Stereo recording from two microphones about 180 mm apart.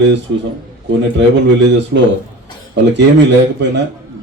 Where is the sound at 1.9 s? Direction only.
65° right (ahead or behind).